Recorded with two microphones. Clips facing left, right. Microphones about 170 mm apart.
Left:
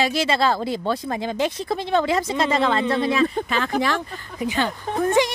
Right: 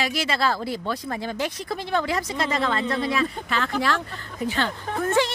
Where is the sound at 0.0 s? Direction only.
25° left (ahead or behind).